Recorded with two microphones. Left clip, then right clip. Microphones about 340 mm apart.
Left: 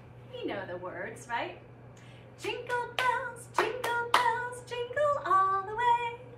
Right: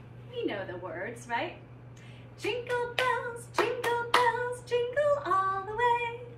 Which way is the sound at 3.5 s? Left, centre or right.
Centre.